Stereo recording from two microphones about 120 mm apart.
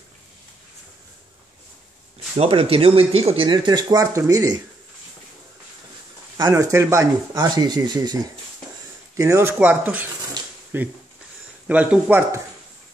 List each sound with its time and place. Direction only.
2.3 s speech: 55° right (ahead or behind)
3.4 s speech: 40° right (ahead or behind)
6.5 s speech: 20° right (ahead or behind)
9.1 s speech: 25° right (ahead or behind)
10.4 s a sound: 35° right (ahead or behind)
10.7 s speech: 20° right (ahead or behind)